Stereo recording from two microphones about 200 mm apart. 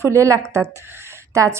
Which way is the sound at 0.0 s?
15° right (ahead or behind).